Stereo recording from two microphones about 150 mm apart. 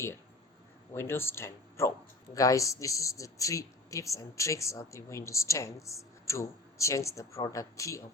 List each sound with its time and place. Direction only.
0.9 s speech: 15° left (ahead or behind)